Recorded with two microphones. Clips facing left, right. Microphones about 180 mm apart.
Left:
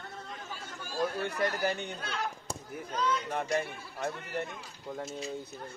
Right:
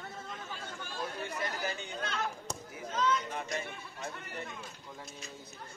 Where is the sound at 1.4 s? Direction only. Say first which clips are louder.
Left 9 dB; 60° left (ahead or behind).